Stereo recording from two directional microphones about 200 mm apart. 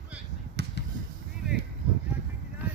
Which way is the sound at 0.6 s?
60° right (ahead or behind).